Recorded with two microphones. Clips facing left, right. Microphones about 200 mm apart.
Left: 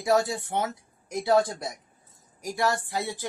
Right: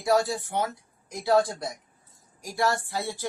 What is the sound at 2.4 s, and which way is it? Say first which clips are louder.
Speech: even; 20° left (ahead or behind).